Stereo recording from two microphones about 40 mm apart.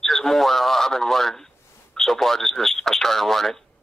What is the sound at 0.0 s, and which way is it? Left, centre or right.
A man's voice, centre.